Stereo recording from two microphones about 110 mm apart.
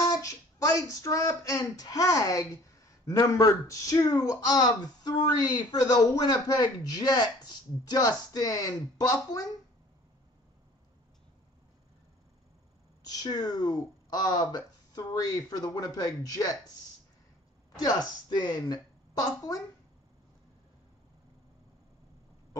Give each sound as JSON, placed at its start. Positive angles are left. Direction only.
{"t": 0.1, "sound": "speech", "side_deg": 30}
{"t": 13.0, "sound": "speech", "side_deg": 35}
{"t": 17.7, "sound": "a woman's voice", "side_deg": 40}